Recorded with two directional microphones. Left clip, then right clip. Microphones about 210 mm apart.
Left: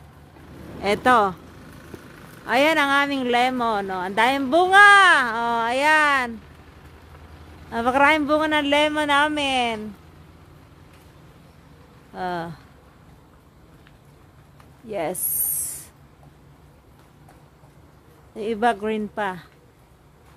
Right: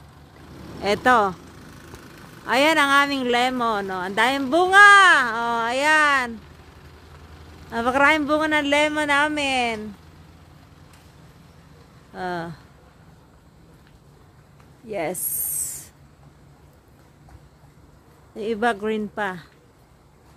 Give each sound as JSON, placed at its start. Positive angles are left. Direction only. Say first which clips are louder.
{"t": 0.4, "sound": "vehicle", "louder": "even", "side_deg": -55}
{"t": 0.8, "sound": "speech", "louder": "even", "side_deg": -5}
{"t": 1.4, "sound": "a sound", "louder": "even", "side_deg": -50}
{"t": 2.4, "sound": "speech", "louder": "right 1 dB", "side_deg": -10}
{"t": 7.1, "sound": "vehicle", "louder": "even", "side_deg": -55}
{"t": 7.7, "sound": "speech", "louder": "even", "side_deg": -5}
{"t": 12.1, "sound": "speech", "louder": "left 1 dB", "side_deg": 0}
{"t": 14.9, "sound": "spray", "louder": "even", "side_deg": -5}
{"t": 18.3, "sound": "speech", "louder": "left 1 dB", "side_deg": -5}